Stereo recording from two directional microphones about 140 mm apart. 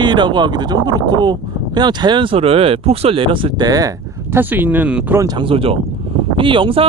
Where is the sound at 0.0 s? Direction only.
35° right (ahead or behind).